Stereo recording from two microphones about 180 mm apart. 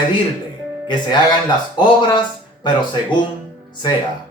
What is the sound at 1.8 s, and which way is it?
Speech, 25° left (ahead or behind).